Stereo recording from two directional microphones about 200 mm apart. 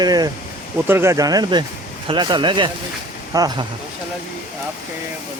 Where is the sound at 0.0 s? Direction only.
20° right (ahead or behind).